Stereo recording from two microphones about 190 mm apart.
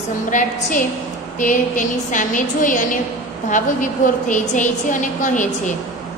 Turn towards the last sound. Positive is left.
turn(degrees=40)  # may be behind; listen again after turning